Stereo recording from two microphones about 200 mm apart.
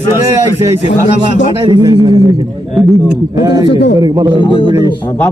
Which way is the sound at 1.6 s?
20° right (ahead or behind).